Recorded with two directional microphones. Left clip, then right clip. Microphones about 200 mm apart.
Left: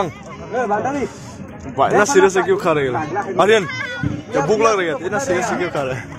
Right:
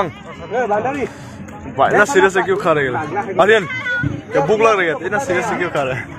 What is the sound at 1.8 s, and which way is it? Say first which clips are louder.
A man's voice: right 1 dB; 10° left (ahead or behind).